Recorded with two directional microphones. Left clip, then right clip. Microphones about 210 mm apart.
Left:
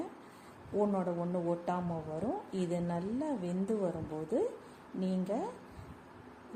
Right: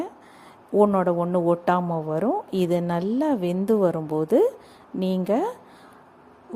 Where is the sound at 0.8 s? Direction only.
40° right (ahead or behind).